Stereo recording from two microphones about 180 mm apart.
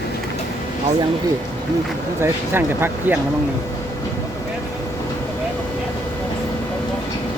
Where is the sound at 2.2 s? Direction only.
10° right (ahead or behind).